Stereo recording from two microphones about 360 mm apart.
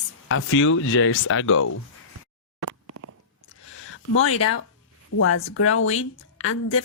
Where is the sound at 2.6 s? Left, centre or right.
Right.